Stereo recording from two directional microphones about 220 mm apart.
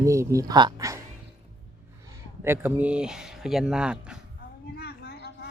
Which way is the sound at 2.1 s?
10° right (ahead or behind).